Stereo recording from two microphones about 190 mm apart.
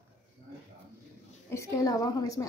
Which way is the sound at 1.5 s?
15° left (ahead or behind).